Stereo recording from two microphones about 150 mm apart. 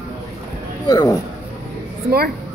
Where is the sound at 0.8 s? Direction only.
25° left (ahead or behind).